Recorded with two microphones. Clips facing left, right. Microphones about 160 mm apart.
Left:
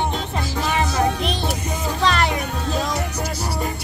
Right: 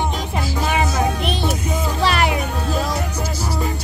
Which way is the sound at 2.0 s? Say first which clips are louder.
Right 1 dB; 10° right (ahead or behind).